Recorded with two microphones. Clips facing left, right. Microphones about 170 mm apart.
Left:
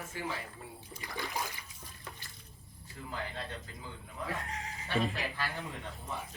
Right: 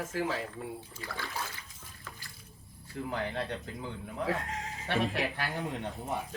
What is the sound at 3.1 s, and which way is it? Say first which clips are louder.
A man's voice: right 5 dB; 65° right (ahead or behind).